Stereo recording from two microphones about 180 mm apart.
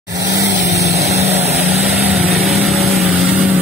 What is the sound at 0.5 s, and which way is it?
Vehicle, 70° right (ahead or behind).